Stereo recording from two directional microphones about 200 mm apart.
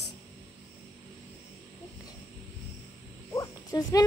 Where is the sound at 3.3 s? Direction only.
15° left (ahead or behind).